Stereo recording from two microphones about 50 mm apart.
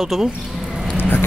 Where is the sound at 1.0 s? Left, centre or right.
Left.